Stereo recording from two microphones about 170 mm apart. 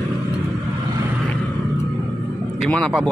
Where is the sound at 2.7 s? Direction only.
5° left (ahead or behind).